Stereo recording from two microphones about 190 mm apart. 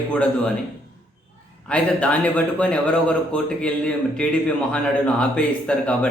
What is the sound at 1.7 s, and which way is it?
A man's voice, 5° left (ahead or behind).